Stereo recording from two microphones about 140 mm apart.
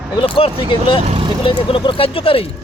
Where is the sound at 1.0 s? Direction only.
40° right (ahead or behind).